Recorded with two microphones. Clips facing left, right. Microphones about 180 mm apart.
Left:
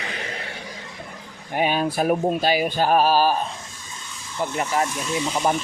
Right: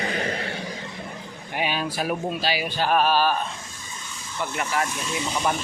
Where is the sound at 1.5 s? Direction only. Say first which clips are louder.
Left 5 dB; 45° left (ahead or behind).